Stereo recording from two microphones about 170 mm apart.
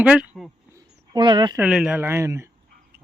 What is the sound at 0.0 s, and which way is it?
Speech, 5° right (ahead or behind).